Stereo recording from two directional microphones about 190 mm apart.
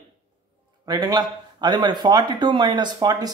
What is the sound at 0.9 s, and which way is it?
Speech, 20° right (ahead or behind).